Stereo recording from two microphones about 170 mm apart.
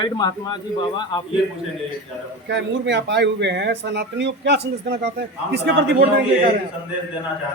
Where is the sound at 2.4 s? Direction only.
90° right.